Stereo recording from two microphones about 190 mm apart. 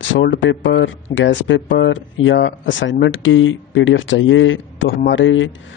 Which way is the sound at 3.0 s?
90° left.